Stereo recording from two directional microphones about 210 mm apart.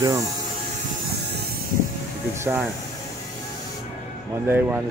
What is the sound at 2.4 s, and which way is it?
Speech, 10° right (ahead or behind).